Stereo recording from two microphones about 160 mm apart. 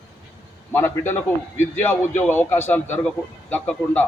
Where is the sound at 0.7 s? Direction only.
15° left (ahead or behind).